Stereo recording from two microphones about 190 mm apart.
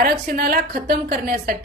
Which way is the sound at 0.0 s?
55° right (ahead or behind).